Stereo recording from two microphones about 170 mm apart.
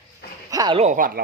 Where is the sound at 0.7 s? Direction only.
45° right (ahead or behind).